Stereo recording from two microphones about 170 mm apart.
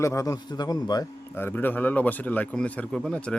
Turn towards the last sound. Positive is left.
turn(degrees=5)  # may be behind; listen again after turning